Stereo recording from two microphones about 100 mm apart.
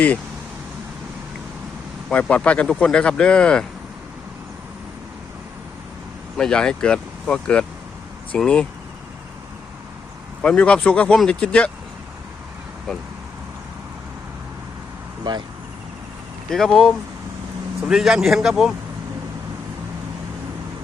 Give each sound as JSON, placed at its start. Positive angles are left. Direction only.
{"t": 2.0, "sound": "speech", "side_deg": 10}
{"t": 6.3, "sound": "speech", "side_deg": 10}
{"t": 10.4, "sound": "speech", "side_deg": 10}
{"t": 15.3, "sound": "speech", "side_deg": -50}
{"t": 16.5, "sound": "a man's voice", "side_deg": 5}